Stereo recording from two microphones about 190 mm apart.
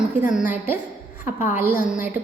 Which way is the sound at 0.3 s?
10° right (ahead or behind).